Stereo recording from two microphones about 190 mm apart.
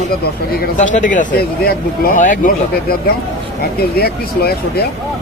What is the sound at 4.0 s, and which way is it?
Speech, 55° left (ahead or behind).